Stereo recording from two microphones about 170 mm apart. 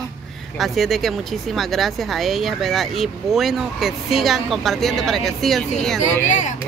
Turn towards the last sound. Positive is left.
turn(degrees=45)  # may be behind; listen again after turning